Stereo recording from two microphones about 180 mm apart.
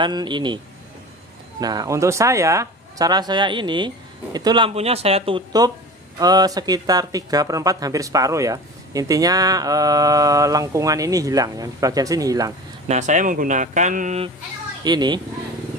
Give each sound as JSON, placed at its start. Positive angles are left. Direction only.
{"t": 0.0, "sound": "speech", "side_deg": -25}
{"t": 1.6, "sound": "speech", "side_deg": -20}
{"t": 12.8, "sound": "speech", "side_deg": -40}
{"t": 14.8, "sound": "speech", "side_deg": -25}